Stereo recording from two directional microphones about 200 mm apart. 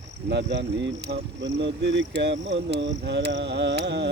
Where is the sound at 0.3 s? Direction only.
60° right (ahead or behind).